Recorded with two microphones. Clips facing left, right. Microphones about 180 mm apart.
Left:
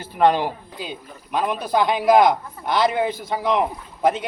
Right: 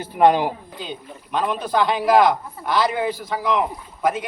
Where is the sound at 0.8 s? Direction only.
10° left (ahead or behind).